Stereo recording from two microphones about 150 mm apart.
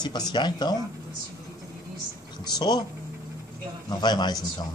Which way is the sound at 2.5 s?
30° left (ahead or behind).